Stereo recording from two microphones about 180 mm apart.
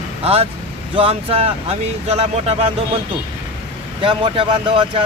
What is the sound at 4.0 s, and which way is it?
Speech, 30° right (ahead or behind).